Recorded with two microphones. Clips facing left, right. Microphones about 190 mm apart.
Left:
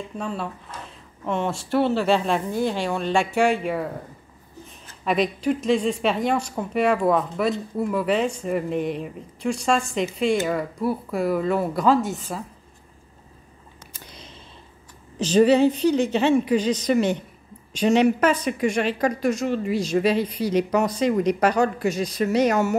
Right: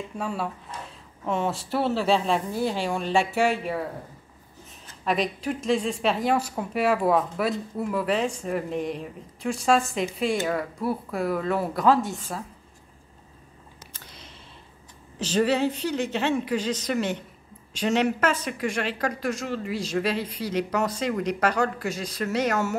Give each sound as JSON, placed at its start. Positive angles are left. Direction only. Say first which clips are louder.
{"t": 0.2, "sound": "a woman's voice", "louder": "even", "side_deg": -5}
{"t": 5.0, "sound": "a woman's voice", "louder": "left 4 dB", "side_deg": 0}
{"t": 15.1, "sound": "speech", "louder": "left 7 dB", "side_deg": 15}